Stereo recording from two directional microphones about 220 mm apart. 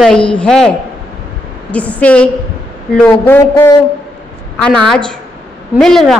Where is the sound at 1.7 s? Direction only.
5° left (ahead or behind).